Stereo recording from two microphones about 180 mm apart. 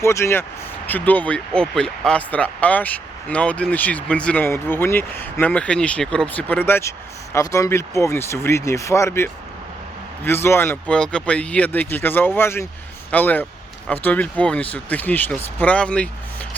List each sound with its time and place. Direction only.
0.0 s speech: 15° left (ahead or behind)